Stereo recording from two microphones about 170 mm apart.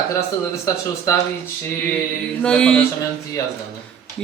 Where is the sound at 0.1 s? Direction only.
20° left (ahead or behind).